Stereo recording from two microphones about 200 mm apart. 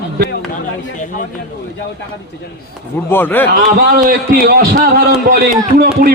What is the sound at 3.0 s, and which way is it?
Speech, 10° left (ahead or behind).